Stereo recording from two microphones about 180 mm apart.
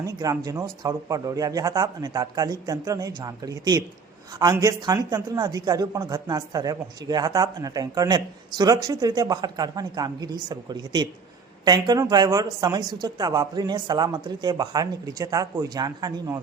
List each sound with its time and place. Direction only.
0.0 s speech: 20° right (ahead or behind)